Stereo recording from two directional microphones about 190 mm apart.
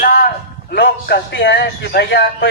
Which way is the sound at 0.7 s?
60° left (ahead or behind).